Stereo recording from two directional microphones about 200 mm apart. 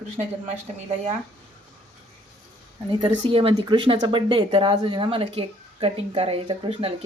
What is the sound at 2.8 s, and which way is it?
Speech, 25° right (ahead or behind).